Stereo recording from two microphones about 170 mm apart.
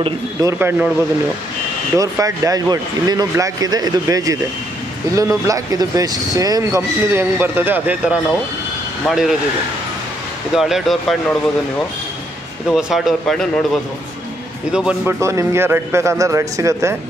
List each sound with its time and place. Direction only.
0.4 s speech: 15° right (ahead or behind)
2.0 s speech: 20° right (ahead or behind); by 9.3 s centre (ahead or behind)
10.5 s speech: centre (ahead or behind)
12.6 s speech: centre (ahead or behind)
14.7 s speech: 5° right (ahead or behind)
15.1 s speech: 15° right (ahead or behind)